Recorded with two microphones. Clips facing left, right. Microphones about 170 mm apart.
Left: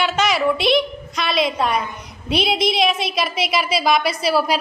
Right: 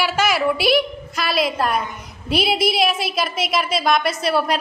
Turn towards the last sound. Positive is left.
turn(degrees=0)  # may be behind; listen again after turning